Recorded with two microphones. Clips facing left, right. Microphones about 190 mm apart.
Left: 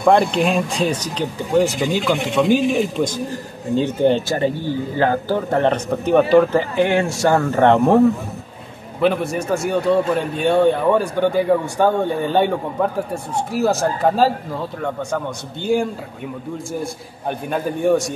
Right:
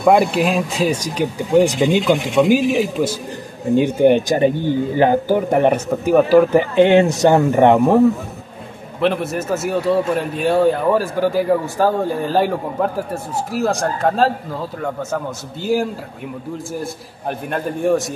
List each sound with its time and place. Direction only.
0.0 s speech: 5° right (ahead or behind)
2.5 s a man's voice: 5° right (ahead or behind)
9.0 s a man's voice: centre (ahead or behind)